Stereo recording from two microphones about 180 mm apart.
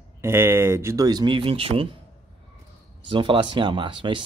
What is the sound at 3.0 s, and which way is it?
Speech, 25° right (ahead or behind).